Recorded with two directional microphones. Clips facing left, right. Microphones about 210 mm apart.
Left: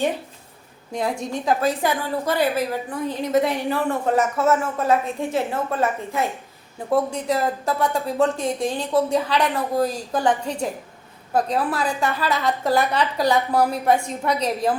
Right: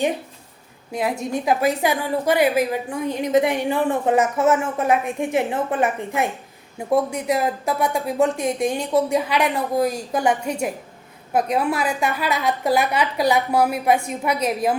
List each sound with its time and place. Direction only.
1.3 s a woman's voice: 10° right (ahead or behind)